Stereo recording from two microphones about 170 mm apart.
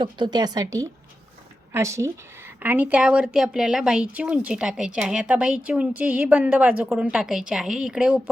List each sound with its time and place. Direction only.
0.0 s a woman's voice: 25° right (ahead or behind); by 8.2 s 5° right (ahead or behind)